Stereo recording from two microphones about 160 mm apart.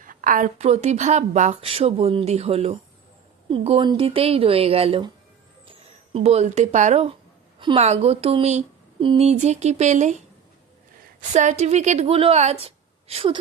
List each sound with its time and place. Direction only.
0.0 s speech: 55° right (ahead or behind); by 5.1 s 35° right (ahead or behind)
6.1 s speech: 40° right (ahead or behind)